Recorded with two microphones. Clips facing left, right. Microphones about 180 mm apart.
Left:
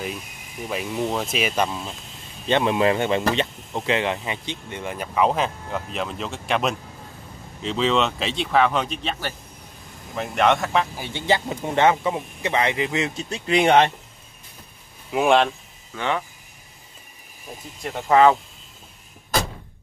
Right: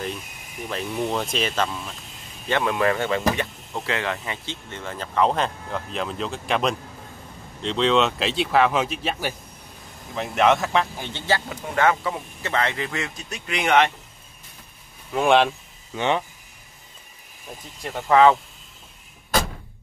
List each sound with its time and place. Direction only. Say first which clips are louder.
0.7 s speech: left 1 dB; 5° left (ahead or behind)
11.1 s speech: left 3 dB; 20° left (ahead or behind)
15.0 s speech: even; 5° left (ahead or behind)
15.9 s speech: right 2 dB; 20° right (ahead or behind)